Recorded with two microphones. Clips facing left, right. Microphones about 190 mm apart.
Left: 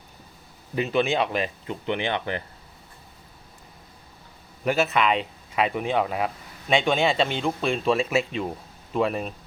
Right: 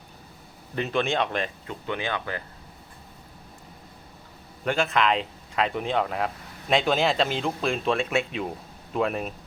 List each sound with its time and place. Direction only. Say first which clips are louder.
0.8 s speech: left 2 dB; 5° left (ahead or behind)
1.6 s speech: left 3 dB; 20° left (ahead or behind)
4.6 s speech: left 2 dB; 5° left (ahead or behind)